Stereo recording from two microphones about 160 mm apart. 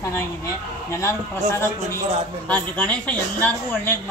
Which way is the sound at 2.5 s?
5° left (ahead or behind).